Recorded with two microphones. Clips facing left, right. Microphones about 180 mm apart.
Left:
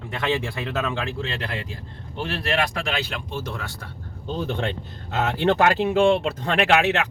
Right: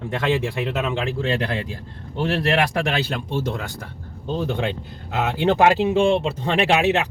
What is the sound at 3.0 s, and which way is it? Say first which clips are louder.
Speech: right 6 dB; 30° right (ahead or behind).